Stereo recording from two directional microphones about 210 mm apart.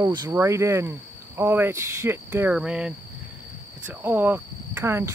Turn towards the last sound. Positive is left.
turn(degrees=-10)  # may be behind; listen again after turning